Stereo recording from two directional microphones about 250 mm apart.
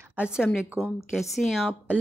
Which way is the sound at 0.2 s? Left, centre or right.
Centre.